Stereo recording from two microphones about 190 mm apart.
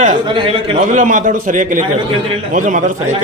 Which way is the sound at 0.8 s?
40° right (ahead or behind).